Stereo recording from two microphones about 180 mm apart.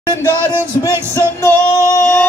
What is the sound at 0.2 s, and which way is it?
Music, 15° left (ahead or behind).